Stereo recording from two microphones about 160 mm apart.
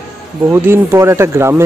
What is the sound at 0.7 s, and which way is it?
Speech, 15° right (ahead or behind).